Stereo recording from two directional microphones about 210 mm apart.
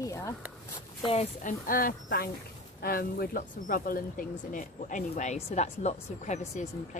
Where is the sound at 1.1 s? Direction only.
30° left (ahead or behind).